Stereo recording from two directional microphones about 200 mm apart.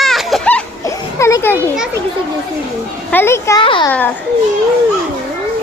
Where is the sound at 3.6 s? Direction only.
25° left (ahead or behind).